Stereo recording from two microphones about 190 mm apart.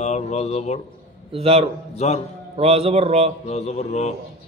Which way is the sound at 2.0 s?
35° left (ahead or behind).